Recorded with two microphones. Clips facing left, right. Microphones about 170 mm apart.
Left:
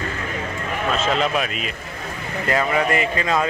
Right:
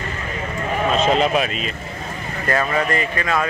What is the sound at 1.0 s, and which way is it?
Speech, 25° right (ahead or behind).